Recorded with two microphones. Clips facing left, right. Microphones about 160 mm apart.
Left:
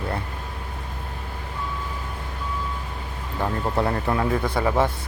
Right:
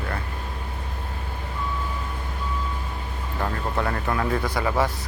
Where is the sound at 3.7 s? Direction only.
30° left (ahead or behind).